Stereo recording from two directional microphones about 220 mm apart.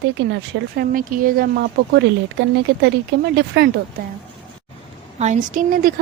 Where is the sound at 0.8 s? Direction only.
40° right (ahead or behind).